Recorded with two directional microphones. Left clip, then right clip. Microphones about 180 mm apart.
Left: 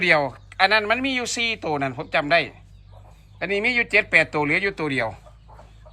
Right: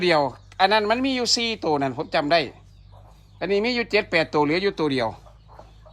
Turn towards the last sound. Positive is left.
turn(degrees=-25)  # may be behind; listen again after turning